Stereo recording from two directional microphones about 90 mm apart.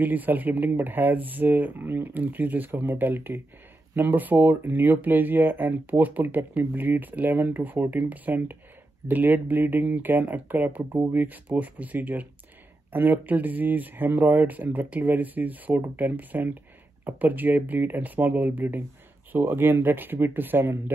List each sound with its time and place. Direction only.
0.0 s speech: 20° right (ahead or behind)